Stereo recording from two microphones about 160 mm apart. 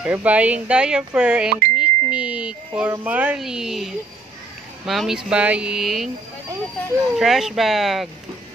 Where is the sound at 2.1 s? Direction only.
5° right (ahead or behind).